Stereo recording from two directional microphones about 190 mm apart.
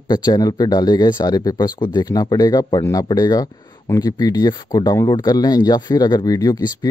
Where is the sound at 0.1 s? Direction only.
20° left (ahead or behind).